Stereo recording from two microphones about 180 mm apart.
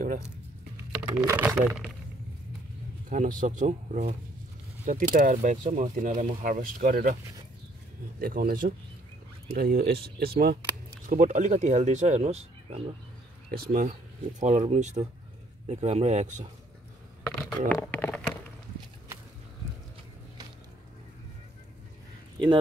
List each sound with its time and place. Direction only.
1.2 s speech: 15° right (ahead or behind)
3.1 s speech: 45° right (ahead or behind)
8.2 s speech: 55° right (ahead or behind)
11.1 s speech: 45° right (ahead or behind)
13.5 s speech: 55° right (ahead or behind)
17.3 s a sound: 5° left (ahead or behind)